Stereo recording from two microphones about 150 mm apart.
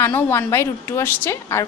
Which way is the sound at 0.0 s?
15° left (ahead or behind).